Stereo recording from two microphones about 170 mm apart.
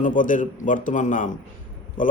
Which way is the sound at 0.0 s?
50° left (ahead or behind).